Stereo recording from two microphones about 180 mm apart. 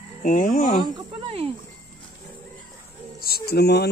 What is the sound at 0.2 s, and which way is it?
Speech, 45° left (ahead or behind).